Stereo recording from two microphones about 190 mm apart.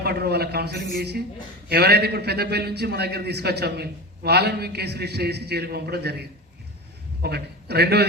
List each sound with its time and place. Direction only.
0.0 s a man's voice: 55° right (ahead or behind)